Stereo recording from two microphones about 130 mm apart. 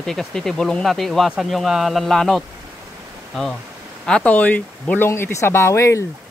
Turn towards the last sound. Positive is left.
turn(degrees=20)  # may be behind; listen again after turning